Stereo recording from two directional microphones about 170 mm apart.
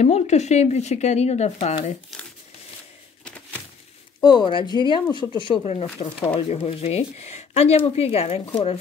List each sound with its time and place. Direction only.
0.0 s speech: 40° left (ahead or behind)
4.2 s speech: 25° left (ahead or behind)